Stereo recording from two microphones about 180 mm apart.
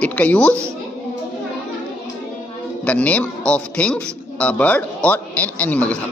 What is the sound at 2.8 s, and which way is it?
A man's voice, 10° left (ahead or behind).